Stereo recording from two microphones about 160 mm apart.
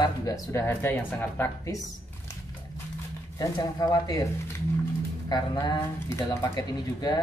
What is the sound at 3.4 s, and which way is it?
Speech, 20° left (ahead or behind).